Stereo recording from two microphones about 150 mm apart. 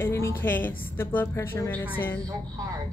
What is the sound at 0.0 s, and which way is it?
Speech, 15° left (ahead or behind).